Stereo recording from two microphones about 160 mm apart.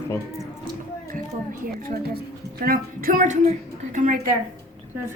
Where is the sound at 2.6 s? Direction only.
65° right (ahead or behind).